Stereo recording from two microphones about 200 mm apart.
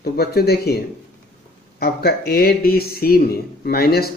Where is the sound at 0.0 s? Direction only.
50° left (ahead or behind).